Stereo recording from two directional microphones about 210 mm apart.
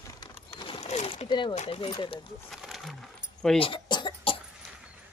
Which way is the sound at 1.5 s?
30° left (ahead or behind).